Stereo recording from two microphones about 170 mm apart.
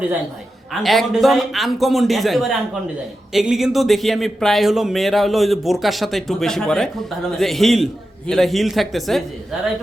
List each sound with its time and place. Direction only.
0.7 s speech: centre (ahead or behind)